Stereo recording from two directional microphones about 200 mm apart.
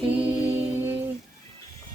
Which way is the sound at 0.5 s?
10° right (ahead or behind).